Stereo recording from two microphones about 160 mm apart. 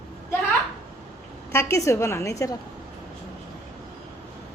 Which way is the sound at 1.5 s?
15° left (ahead or behind).